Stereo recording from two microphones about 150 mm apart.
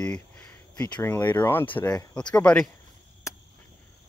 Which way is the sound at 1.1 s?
15° left (ahead or behind).